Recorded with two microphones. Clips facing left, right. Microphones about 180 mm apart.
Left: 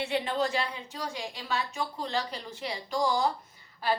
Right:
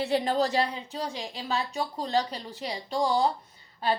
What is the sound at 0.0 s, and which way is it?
A woman's voice, 40° right (ahead or behind).